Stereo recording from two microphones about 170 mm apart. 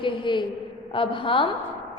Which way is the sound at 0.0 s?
25° left (ahead or behind).